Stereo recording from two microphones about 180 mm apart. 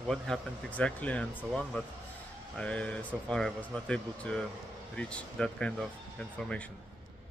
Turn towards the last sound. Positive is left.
turn(degrees=5)  # may be behind; listen again after turning